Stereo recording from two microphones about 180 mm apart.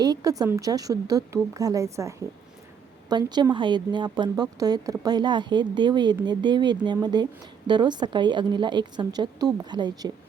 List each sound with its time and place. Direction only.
0.0 s speech: 20° right (ahead or behind)